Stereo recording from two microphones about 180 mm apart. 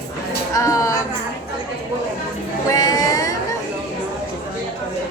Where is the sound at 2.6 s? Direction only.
20° left (ahead or behind).